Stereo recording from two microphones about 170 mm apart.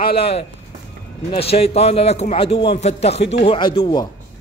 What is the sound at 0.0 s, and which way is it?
A man's voice, 35° left (ahead or behind).